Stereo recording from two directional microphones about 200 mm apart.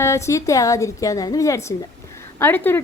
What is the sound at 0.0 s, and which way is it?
A woman's voice, 15° left (ahead or behind).